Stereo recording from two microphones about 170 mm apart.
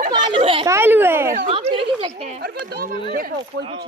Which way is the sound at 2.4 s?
60° right (ahead or behind).